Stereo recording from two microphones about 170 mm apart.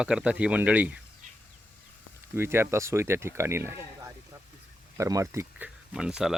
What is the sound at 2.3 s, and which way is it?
Speech, 15° right (ahead or behind).